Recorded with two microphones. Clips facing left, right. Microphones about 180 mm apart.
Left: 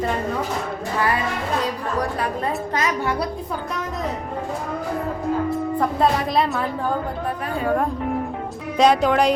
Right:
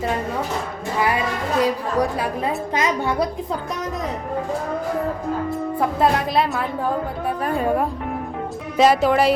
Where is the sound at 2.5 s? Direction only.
20° right (ahead or behind).